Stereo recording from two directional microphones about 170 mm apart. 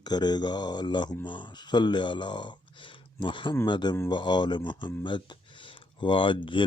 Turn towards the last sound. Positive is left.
turn(degrees=30)  # may be behind; listen again after turning